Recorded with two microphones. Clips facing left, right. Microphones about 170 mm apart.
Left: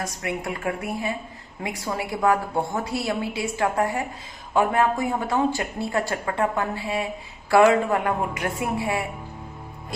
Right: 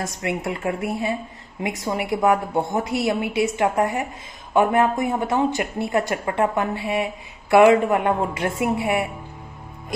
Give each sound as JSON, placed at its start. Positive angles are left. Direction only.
{"t": 0.0, "sound": "speech", "side_deg": -25}